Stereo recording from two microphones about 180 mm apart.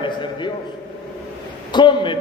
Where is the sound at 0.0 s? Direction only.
25° left (ahead or behind).